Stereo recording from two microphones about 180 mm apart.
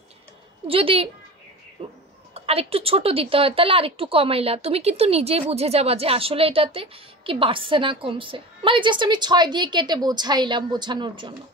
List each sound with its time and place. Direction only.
0.7 s a woman's voice: 30° right (ahead or behind)
2.3 s a woman's voice: 35° right (ahead or behind)